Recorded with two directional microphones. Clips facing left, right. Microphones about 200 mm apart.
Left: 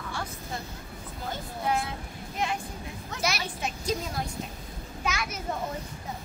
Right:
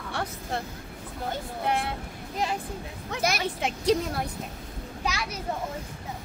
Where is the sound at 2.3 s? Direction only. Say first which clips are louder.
Right 1 dB; 35° right (ahead or behind).